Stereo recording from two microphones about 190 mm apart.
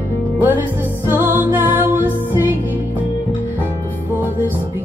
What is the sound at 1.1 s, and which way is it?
Music, 10° right (ahead or behind).